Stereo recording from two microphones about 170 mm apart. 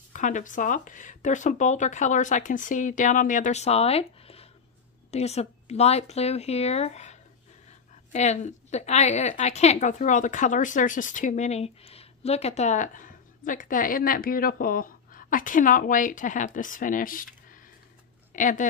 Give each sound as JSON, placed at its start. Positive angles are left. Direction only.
{"t": 0.1, "sound": "a woman's voice", "side_deg": 50}